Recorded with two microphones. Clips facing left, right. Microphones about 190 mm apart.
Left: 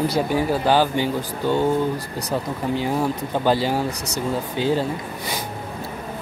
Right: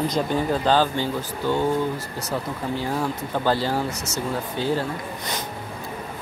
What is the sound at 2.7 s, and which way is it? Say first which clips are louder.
Speech: left 4 dB; 15° left (ahead or behind).